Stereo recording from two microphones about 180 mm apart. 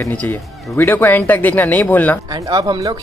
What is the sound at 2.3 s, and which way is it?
Speech, 20° right (ahead or behind).